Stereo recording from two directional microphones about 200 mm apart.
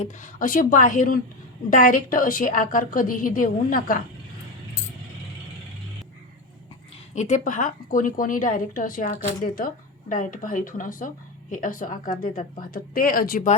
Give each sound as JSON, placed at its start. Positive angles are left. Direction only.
{"t": 0.0, "sound": "a woman's voice", "side_deg": 40}
{"t": 7.1, "sound": "a woman's voice", "side_deg": 35}